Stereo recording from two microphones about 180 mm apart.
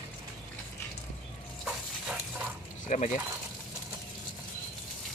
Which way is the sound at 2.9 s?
45° left (ahead or behind).